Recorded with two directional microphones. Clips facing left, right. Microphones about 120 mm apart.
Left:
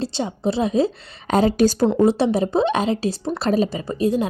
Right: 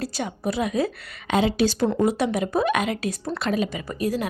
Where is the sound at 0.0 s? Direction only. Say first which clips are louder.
Left 4 dB; 25° left (ahead or behind).